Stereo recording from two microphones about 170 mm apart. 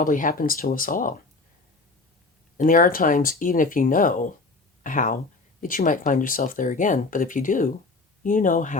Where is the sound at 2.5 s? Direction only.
50° left (ahead or behind).